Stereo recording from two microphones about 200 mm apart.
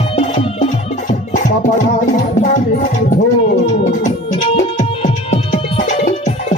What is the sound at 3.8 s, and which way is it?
Music, 30° left (ahead or behind).